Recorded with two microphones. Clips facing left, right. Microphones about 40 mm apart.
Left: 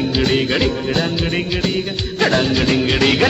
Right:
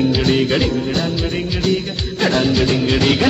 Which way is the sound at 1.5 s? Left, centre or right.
Centre.